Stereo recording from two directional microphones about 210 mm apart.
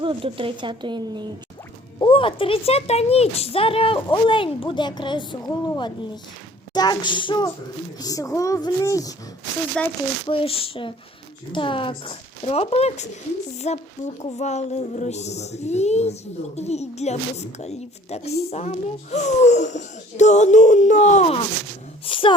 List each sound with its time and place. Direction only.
0.0 s speech: 25° right (ahead or behind)
2.0 s speech: 25° left (ahead or behind)
9.8 s speech: 5° left (ahead or behind)
10.2 s a woman's voice: 25° left (ahead or behind)